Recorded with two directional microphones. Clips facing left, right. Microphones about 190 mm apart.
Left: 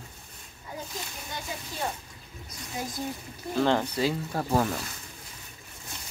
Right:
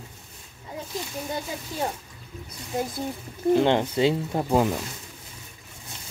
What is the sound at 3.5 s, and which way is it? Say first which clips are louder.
Speech: right 4 dB; 20° right (ahead or behind).